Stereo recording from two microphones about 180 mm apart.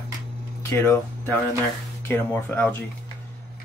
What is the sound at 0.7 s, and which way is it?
Speech, 10° left (ahead or behind).